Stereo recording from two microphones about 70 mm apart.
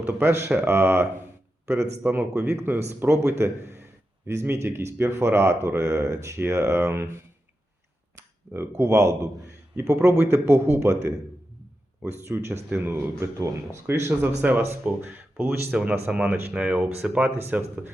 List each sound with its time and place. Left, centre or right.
0.0 s speech: right
8.5 s a man's voice: right
13.1 s speech: right
14.1 s speech: right
15.7 s speech: centre